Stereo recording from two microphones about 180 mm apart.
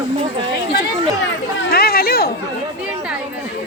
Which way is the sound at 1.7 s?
60° left (ahead or behind).